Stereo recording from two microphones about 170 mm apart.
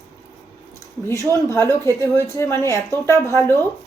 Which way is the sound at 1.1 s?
15° left (ahead or behind).